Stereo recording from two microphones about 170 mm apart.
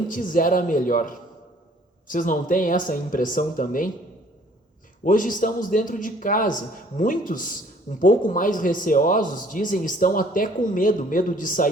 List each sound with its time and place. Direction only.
0.1 s speech: 50° left (ahead or behind)
5.0 s speech: 50° left (ahead or behind)